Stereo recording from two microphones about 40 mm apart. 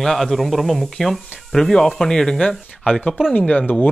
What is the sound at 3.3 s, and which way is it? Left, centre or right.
Speech, left.